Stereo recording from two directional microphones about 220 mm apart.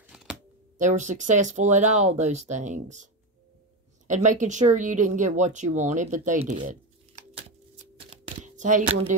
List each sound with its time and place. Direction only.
0.0 s shuffling cards: centre (ahead or behind)
0.7 s speech: 35° right (ahead or behind)
4.1 s speech: 35° right (ahead or behind)